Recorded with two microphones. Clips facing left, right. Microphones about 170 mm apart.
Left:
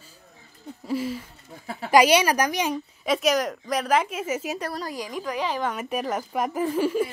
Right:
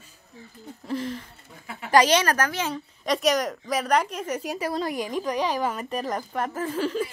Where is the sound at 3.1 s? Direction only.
Centre (ahead or behind).